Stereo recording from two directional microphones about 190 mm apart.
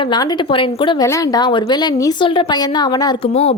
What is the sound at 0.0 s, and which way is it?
Speech, 20° left (ahead or behind).